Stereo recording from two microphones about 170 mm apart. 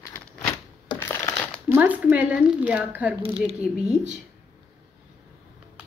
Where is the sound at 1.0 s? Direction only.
15° left (ahead or behind).